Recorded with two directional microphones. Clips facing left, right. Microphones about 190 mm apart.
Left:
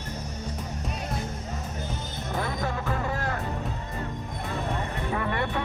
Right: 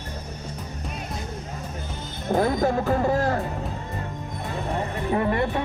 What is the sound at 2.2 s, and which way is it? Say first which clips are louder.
Speech: right 10 dB; 40° right (ahead or behind).